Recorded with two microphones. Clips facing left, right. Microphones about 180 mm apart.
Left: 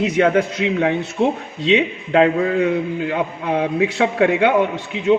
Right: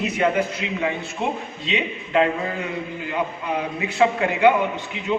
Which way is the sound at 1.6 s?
85° left.